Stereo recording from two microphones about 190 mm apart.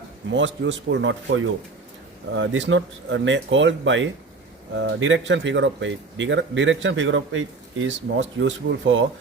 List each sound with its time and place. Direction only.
0.3 s speech: 75° right (ahead or behind)